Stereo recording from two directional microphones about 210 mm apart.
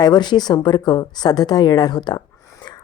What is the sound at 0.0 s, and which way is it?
A woman's voice, 20° left (ahead or behind).